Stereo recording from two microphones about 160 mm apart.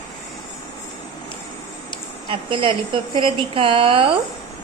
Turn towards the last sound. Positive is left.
turn(degrees=-35)  # may be behind; listen again after turning